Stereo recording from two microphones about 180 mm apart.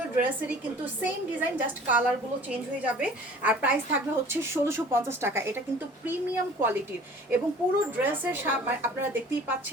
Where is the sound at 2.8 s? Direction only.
10° right (ahead or behind).